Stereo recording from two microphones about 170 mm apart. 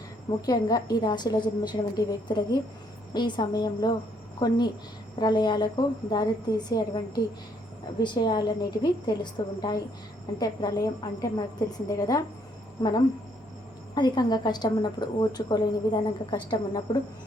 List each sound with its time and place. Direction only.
0.3 s a woman's voice: 25° left (ahead or behind)